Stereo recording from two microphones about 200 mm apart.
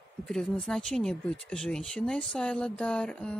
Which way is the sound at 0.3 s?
5° left (ahead or behind).